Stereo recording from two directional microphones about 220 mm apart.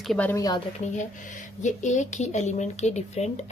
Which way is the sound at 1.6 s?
35° left (ahead or behind).